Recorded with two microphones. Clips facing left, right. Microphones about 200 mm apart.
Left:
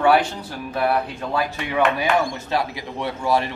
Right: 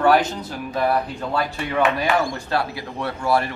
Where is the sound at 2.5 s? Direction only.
15° left (ahead or behind).